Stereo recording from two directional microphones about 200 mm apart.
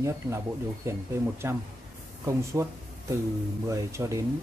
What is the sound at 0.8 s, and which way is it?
Speech, 15° right (ahead or behind).